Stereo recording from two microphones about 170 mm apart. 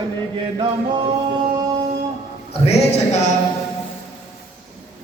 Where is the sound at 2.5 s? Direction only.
40° left (ahead or behind).